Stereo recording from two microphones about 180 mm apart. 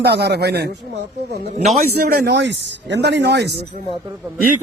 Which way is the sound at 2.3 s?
70° right (ahead or behind).